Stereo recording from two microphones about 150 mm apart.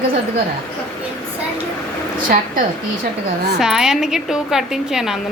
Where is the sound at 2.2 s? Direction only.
70° right (ahead or behind).